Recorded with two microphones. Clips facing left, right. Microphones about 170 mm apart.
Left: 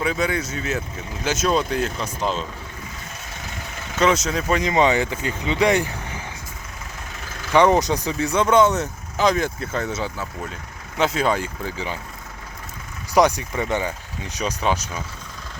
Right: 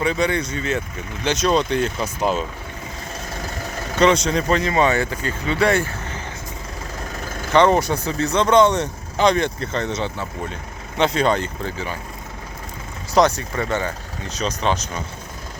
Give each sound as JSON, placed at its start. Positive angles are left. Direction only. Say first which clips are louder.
{"t": 0.0, "sound": "speech", "louder": "right 2 dB", "side_deg": 5}
{"t": 2.2, "sound": "speech", "louder": "right 4 dB", "side_deg": -10}
{"t": 4.0, "sound": "speech", "louder": "right 3 dB", "side_deg": 5}
{"t": 7.5, "sound": "speech", "louder": "right 1 dB", "side_deg": 15}
{"t": 13.1, "sound": "speech", "louder": "right 1 dB", "side_deg": 10}